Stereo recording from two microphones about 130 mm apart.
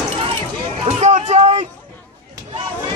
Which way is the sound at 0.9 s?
60° right (ahead or behind).